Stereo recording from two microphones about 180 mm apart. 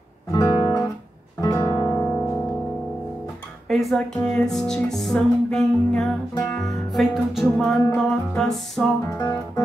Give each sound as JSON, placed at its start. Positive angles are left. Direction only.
{"t": 0.3, "sound": "guitar", "side_deg": 15}
{"t": 1.4, "sound": "music", "side_deg": 15}
{"t": 3.6, "sound": "speech", "side_deg": 0}
{"t": 6.3, "sound": "music", "side_deg": 10}
{"t": 6.6, "sound": "speech", "side_deg": 0}
{"t": 9.0, "sound": "music", "side_deg": 15}